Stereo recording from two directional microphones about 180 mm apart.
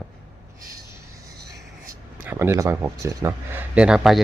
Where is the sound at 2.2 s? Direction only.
15° right (ahead or behind).